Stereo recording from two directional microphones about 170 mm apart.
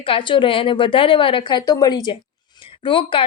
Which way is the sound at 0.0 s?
30° left (ahead or behind).